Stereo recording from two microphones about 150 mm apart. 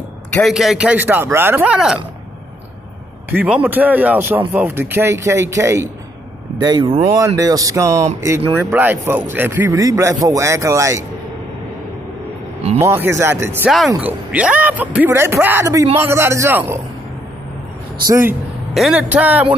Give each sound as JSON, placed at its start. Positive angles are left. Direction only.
{"t": 0.3, "sound": "a man's voice", "side_deg": 0}
{"t": 3.3, "sound": "a man's voice", "side_deg": -10}
{"t": 12.8, "sound": "a man's voice", "side_deg": -15}
{"t": 13.7, "sound": "a man's voice", "side_deg": 0}
{"t": 18.0, "sound": "speech", "side_deg": -20}
{"t": 18.7, "sound": "a man's voice", "side_deg": 0}